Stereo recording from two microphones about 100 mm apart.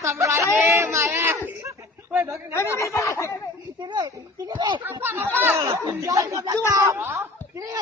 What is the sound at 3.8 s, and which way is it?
Speech, 50° right (ahead or behind).